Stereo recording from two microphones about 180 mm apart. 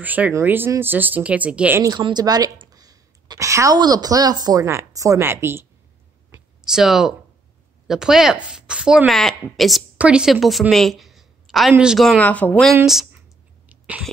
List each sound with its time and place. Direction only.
0.0 s speech: 10° right (ahead or behind)
1.8 s a woman's voice: 25° right (ahead or behind)
6.7 s a woman's voice: 5° right (ahead or behind)
13.7 s sneeze: 10° right (ahead or behind)